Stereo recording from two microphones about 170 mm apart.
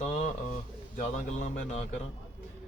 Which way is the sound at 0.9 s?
45° left (ahead or behind).